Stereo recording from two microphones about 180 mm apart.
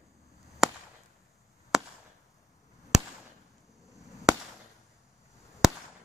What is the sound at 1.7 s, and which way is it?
Chop, centre (ahead or behind).